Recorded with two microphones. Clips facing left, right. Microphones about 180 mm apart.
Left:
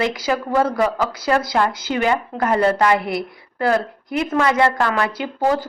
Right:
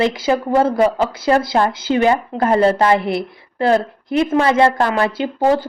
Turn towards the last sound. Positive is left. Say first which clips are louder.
# right 4 dB
turn(degrees=-25)  # may be behind; listen again after turning